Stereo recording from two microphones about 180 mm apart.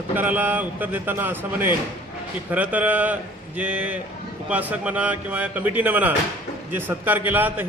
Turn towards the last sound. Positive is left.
turn(degrees=-10)  # may be behind; listen again after turning